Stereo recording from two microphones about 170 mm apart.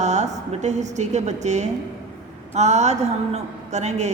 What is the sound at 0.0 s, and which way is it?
A woman's voice, 45° right (ahead or behind).